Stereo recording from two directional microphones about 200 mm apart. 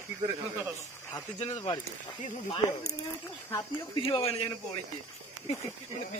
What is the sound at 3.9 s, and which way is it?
Speech, 30° left (ahead or behind).